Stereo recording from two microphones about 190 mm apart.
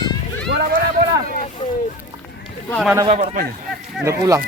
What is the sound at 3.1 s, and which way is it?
Speech, 35° right (ahead or behind).